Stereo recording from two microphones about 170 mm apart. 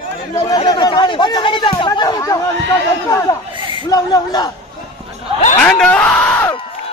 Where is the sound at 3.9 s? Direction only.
20° left (ahead or behind).